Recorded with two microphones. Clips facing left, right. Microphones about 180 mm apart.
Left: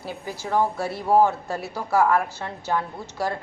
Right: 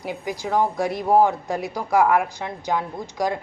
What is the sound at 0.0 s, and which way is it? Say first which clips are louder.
A woman's voice: right 4 dB; 15° right (ahead or behind).